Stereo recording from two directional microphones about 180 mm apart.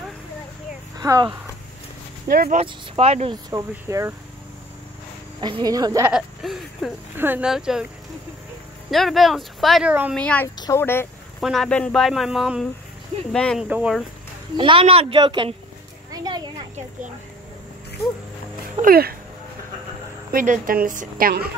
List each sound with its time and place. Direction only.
0.9 s speech: 20° right (ahead or behind)
2.2 s speech: 55° right (ahead or behind)
2.5 s speech: 35° right (ahead or behind)
3.4 s speech: 20° right (ahead or behind)
5.4 s speech: 25° right (ahead or behind)
6.1 s speech: centre (ahead or behind)
8.9 s speech: centre (ahead or behind)
10.1 s speech: 5° left (ahead or behind)
11.4 s speech: centre (ahead or behind)
14.6 s speech: 30° right (ahead or behind)
16.1 s a sound: 20° right (ahead or behind)
18.8 s speech: 55° right (ahead or behind)
20.2 s a woman's voice: 50° right (ahead or behind)